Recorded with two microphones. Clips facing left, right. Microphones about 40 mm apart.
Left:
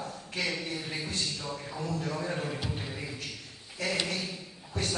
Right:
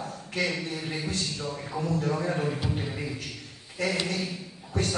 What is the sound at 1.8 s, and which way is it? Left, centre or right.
Speech, right.